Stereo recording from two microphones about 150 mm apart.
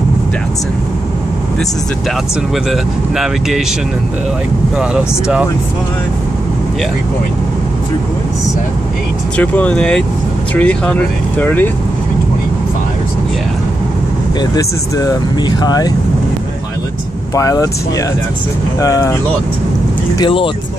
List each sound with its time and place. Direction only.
2.7 s speech: 5° right (ahead or behind)
4.7 s speech: 5° right (ahead or behind)
9.4 s speech: 10° left (ahead or behind)
14.4 s speech: 25° left (ahead or behind)
17.4 s speech: 25° left (ahead or behind)
18.8 s speech: 20° left (ahead or behind)
20.2 s speech: 35° left (ahead or behind)